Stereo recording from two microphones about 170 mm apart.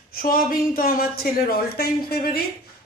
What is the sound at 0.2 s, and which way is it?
Speech, 55° left (ahead or behind).